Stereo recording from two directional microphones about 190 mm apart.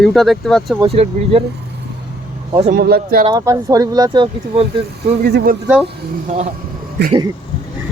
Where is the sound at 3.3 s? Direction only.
20° right (ahead or behind).